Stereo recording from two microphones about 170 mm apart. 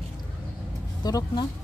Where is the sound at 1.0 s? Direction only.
25° left (ahead or behind).